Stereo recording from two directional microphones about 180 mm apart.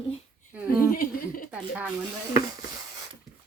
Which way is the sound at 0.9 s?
50° left (ahead or behind).